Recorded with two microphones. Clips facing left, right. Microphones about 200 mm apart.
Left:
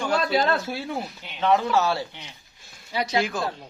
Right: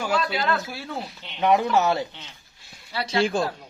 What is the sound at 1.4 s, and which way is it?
Speech, 15° right (ahead or behind).